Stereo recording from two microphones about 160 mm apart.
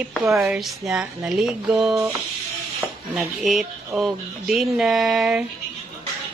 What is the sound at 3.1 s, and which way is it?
A woman's voice, centre (ahead or behind).